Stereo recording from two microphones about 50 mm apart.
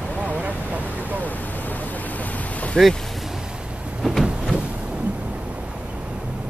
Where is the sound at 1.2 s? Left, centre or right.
Left.